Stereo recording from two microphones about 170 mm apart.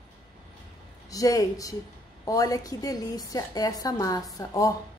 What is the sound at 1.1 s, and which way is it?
A woman's voice, 20° left (ahead or behind).